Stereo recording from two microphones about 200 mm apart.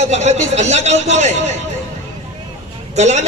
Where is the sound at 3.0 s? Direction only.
35° right (ahead or behind).